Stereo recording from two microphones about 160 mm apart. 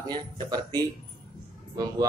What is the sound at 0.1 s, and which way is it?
A man's voice, 25° right (ahead or behind).